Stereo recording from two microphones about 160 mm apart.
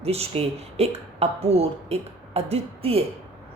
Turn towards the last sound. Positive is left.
turn(degrees=-40)  # may be behind; listen again after turning